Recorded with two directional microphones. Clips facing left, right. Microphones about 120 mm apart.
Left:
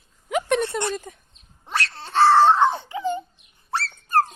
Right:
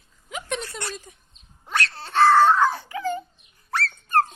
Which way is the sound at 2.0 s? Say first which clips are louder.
Left 1 dB; 30° left (ahead or behind).